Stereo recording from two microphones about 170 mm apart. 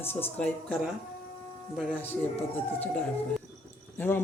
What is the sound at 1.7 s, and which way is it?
Speech, 10° left (ahead or behind).